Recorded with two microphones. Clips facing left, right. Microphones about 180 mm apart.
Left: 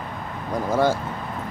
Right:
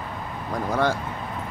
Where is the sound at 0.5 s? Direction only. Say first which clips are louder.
Left 3 dB; 5° left (ahead or behind).